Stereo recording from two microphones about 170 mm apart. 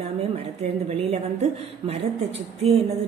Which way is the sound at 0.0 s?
35° right (ahead or behind).